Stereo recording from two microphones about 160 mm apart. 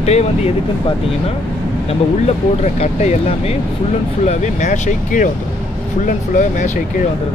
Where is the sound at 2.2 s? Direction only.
45° left (ahead or behind).